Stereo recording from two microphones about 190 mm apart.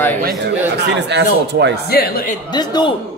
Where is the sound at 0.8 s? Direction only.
65° right (ahead or behind).